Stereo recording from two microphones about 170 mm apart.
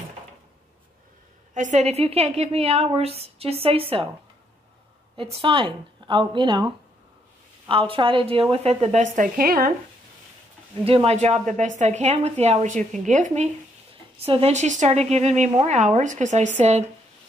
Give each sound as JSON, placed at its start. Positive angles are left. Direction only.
{"t": 1.5, "sound": "a woman's voice", "side_deg": -45}
{"t": 5.1, "sound": "a woman's voice", "side_deg": -35}
{"t": 10.9, "sound": "a woman's voice", "side_deg": -35}